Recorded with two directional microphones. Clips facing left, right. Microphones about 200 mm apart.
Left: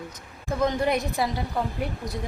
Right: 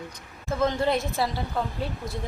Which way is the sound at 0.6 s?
15° left (ahead or behind).